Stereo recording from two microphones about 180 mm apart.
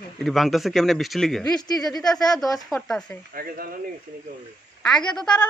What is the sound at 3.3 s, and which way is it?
Speech, 55° right (ahead or behind).